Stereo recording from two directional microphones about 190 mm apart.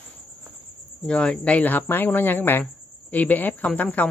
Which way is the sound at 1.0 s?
5° left (ahead or behind).